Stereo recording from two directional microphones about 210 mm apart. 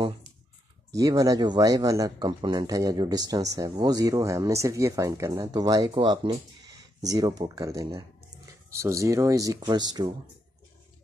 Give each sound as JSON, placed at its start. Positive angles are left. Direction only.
{"t": 0.9, "sound": "speech", "side_deg": -15}